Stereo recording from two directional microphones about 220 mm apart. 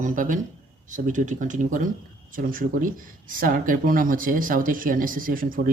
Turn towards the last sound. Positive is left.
turn(degrees=-40)  # may be behind; listen again after turning